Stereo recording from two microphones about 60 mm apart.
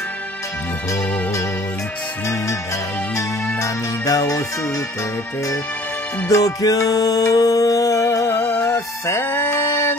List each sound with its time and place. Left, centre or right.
3.5 s music: left
6.2 s music: left
8.3 s music: left
9.2 s music: left